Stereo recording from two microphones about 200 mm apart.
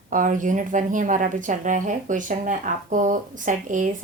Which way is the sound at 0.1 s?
40° right (ahead or behind).